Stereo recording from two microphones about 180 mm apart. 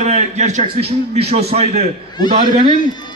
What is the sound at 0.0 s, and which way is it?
A man's voice, 40° right (ahead or behind).